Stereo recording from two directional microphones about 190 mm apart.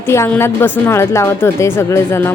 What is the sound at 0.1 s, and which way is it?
A woman's voice, 15° left (ahead or behind).